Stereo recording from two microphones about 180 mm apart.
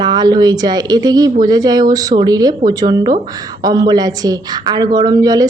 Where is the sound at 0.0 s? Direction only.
20° right (ahead or behind).